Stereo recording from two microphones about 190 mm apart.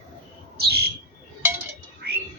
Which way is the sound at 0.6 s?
55° right (ahead or behind).